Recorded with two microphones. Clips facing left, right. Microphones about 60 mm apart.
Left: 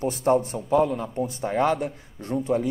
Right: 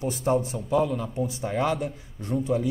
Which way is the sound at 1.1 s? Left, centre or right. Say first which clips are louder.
Left 1 dB; left.